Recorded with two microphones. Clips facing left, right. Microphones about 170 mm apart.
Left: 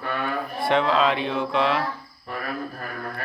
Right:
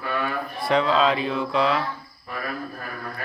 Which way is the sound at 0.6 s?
Centre (ahead or behind).